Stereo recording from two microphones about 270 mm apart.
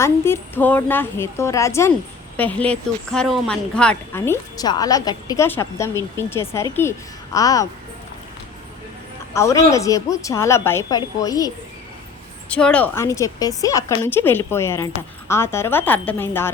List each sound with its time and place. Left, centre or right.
0.0 s speech: centre
9.3 s speech: centre